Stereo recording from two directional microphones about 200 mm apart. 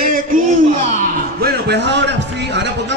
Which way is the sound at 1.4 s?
55° right (ahead or behind).